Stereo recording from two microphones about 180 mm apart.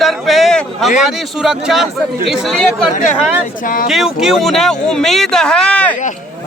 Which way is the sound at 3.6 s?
50° left (ahead or behind).